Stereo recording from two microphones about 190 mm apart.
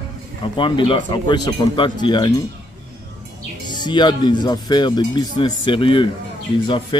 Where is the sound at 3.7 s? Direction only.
25° left (ahead or behind).